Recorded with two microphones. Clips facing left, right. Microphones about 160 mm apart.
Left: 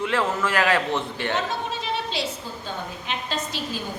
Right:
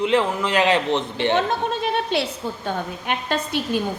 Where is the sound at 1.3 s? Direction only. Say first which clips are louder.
Right 5 dB; 60° right (ahead or behind).